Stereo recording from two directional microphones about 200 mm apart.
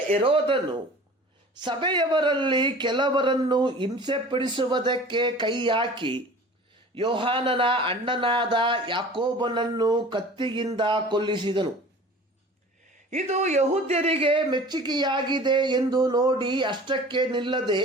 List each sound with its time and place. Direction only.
0.3 s speech: 25° right (ahead or behind)
1.6 s speech: 20° right (ahead or behind)
13.1 s speech: 35° right (ahead or behind)